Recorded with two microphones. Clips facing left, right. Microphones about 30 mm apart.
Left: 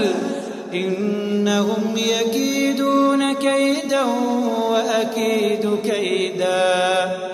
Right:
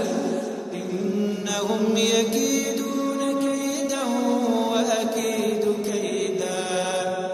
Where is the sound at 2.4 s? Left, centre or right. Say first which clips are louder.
Left 3 dB; left.